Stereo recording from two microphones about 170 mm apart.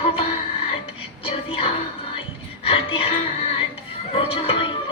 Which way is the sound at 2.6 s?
35° left (ahead or behind).